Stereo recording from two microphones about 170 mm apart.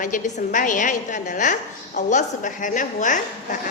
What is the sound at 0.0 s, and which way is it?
A woman's voice, 50° left (ahead or behind).